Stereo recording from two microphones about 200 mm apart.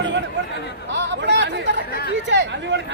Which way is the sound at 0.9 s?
60° right (ahead or behind).